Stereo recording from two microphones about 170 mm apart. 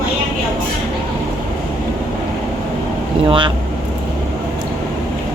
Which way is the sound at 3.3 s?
25° right (ahead or behind).